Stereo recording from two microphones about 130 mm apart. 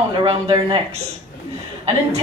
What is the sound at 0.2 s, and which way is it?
Speech, 45° right (ahead or behind).